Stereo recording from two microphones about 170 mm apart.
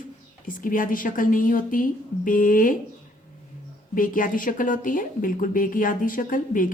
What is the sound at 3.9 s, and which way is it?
A woman's voice, 55° left (ahead or behind).